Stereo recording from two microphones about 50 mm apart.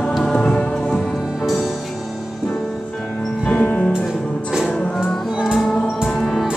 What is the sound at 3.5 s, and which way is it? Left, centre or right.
Music, left.